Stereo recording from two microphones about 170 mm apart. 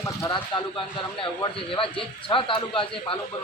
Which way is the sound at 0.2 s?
20° left (ahead or behind).